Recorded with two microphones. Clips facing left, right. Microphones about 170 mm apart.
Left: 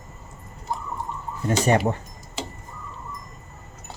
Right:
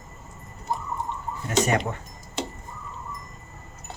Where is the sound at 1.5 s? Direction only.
30° left (ahead or behind).